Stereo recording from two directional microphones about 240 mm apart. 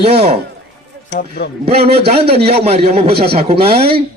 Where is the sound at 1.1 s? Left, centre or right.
Left.